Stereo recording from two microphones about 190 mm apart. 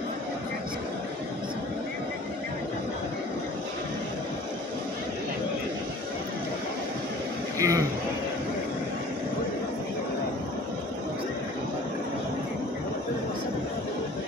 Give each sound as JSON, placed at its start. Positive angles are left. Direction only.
{"t": 7.5, "sound": "speech", "side_deg": -15}